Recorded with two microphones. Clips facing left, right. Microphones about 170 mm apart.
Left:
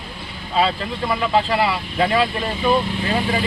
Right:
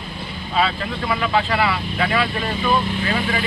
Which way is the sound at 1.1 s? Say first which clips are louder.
Left 2 dB; 30° left (ahead or behind).